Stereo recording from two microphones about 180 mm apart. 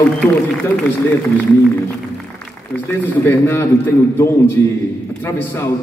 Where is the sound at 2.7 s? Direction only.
10° left (ahead or behind).